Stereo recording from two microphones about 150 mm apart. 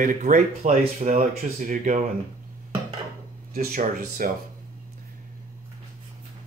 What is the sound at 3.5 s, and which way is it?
Speech, 65° right (ahead or behind).